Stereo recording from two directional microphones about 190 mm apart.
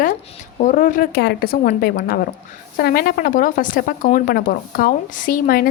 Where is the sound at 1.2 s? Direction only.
55° left (ahead or behind).